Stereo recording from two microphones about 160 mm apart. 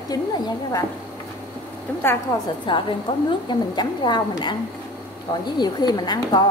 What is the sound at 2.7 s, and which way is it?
A woman's voice, 30° left (ahead or behind).